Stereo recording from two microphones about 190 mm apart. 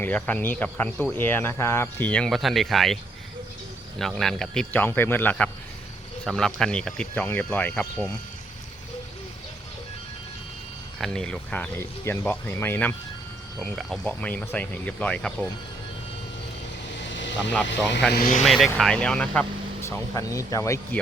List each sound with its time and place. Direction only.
0.0 s speech: 10° left (ahead or behind)
10.9 s speech: centre (ahead or behind)
13.6 s speech: centre (ahead or behind)
17.1 s vehicle: 70° left (ahead or behind)
18.1 s speech: 50° left (ahead or behind)
18.4 s speech: centre (ahead or behind)